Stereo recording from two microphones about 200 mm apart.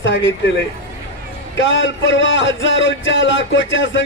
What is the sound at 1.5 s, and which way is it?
A man's voice, 70° left (ahead or behind).